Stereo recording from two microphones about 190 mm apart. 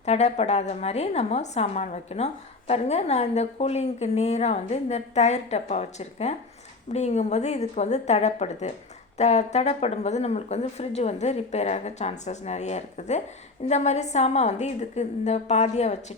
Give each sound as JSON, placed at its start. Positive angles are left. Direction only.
{"t": 0.0, "sound": "a woman's voice", "side_deg": 35}